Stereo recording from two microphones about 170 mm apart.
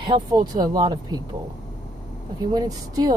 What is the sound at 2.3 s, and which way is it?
Speech, 20° right (ahead or behind).